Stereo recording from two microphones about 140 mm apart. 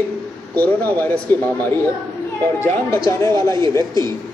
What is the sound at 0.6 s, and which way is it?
Speech, 10° left (ahead or behind).